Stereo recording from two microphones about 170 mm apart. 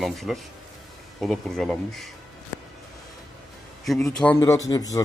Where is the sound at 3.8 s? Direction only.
Centre (ahead or behind).